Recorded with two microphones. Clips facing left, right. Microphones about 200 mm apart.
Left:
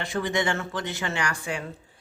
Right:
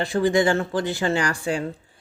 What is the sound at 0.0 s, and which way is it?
Speech, 35° right (ahead or behind).